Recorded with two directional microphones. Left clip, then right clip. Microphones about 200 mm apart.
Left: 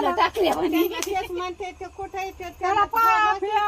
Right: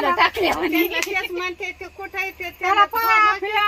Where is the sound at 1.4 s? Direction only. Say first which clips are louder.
Right 4 dB; 45° left (ahead or behind).